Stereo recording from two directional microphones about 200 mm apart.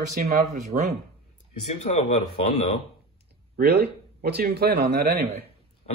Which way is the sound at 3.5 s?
55° right (ahead or behind).